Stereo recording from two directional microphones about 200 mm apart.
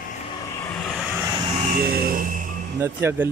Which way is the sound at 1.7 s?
50° right (ahead or behind).